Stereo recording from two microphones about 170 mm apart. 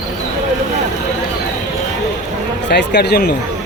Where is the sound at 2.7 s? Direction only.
85° left.